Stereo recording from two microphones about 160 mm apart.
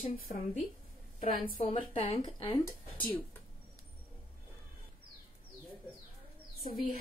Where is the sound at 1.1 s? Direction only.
60° left (ahead or behind).